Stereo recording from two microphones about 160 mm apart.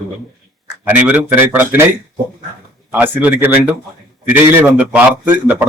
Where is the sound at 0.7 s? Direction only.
10° right (ahead or behind).